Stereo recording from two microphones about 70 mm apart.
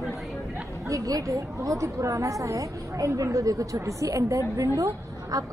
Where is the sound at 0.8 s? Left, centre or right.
Right.